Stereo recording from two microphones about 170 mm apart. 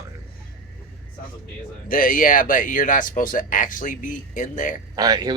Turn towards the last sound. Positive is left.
turn(degrees=-25)  # may be behind; listen again after turning